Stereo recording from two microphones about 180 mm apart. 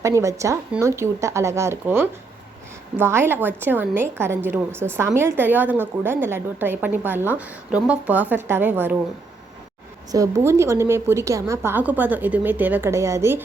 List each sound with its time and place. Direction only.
0.2 s a woman's voice: 15° right (ahead or behind)
10.1 s a woman's voice: 20° right (ahead or behind)